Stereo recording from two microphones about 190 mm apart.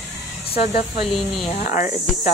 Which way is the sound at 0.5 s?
55° left (ahead or behind).